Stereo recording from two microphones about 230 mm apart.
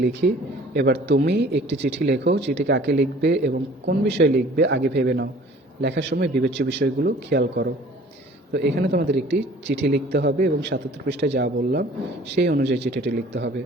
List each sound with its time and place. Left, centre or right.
0.0 s speech: right